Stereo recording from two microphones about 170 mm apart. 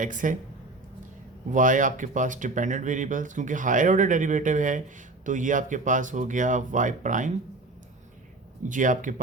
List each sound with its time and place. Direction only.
0.0 s speech: 50° right (ahead or behind)
1.5 s speech: 50° right (ahead or behind)
8.7 s speech: 50° right (ahead or behind)